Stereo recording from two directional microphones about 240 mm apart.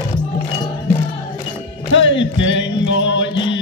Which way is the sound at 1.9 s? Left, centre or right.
Left.